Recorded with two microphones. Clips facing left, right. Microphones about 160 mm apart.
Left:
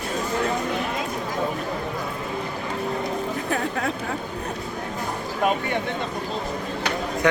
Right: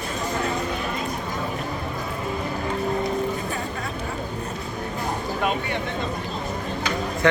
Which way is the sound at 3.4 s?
80° left.